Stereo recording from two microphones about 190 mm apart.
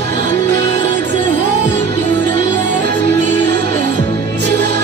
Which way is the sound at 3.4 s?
60° right (ahead or behind).